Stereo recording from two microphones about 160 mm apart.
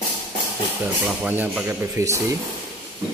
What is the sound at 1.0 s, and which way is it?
Speech, 10° right (ahead or behind).